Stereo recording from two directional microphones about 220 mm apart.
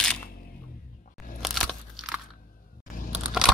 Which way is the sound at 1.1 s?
Centre (ahead or behind).